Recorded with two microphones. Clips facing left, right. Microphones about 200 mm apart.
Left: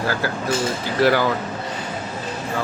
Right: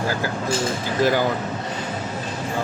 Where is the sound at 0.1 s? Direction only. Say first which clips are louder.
Left 1 dB; 15° right (ahead or behind).